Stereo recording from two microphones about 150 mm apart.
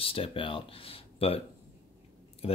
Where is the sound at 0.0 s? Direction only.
35° left (ahead or behind).